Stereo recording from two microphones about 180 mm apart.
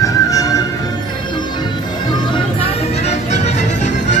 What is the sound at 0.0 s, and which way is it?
Music, 20° left (ahead or behind).